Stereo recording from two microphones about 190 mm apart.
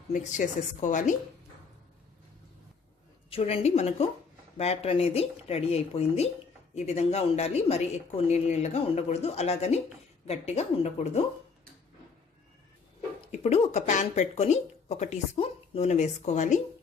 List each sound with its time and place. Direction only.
0.1 s speech: 40° left (ahead or behind)
3.2 s speech: 30° left (ahead or behind)
13.2 s speech: 35° left (ahead or behind)